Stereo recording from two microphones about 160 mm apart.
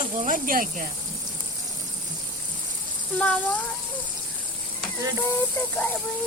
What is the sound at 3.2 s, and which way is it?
Speech, 10° left (ahead or behind).